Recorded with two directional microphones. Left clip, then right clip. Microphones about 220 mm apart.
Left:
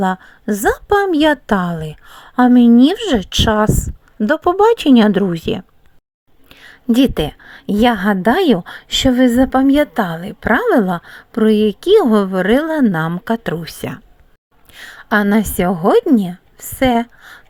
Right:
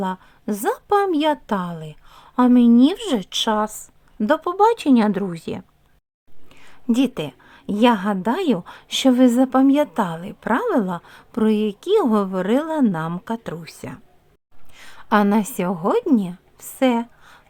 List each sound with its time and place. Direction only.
0.0 s a woman's voice: 20° left (ahead or behind)
6.5 s a sound: 15° left (ahead or behind)
6.9 s a woman's voice: 15° left (ahead or behind)